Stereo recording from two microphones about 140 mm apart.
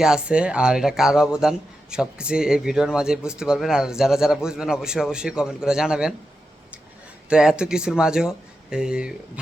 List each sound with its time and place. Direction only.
0.0 s speech: 5° right (ahead or behind)
7.3 s speech: 5° right (ahead or behind)